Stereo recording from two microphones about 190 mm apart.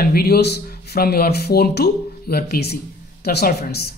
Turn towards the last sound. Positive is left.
turn(degrees=55)  # may be behind; listen again after turning